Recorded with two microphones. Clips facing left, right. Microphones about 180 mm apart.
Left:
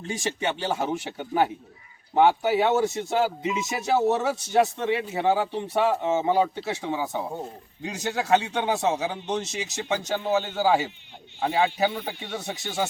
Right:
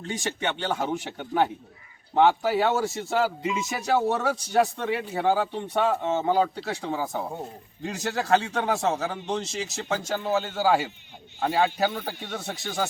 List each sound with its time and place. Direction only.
0.4 s a man's voice: 5° left (ahead or behind)
4.0 s speech: 25° left (ahead or behind)
4.3 s speech: 5° left (ahead or behind)